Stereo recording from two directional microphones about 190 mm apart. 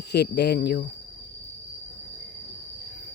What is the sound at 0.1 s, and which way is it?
Speech, 60° left (ahead or behind).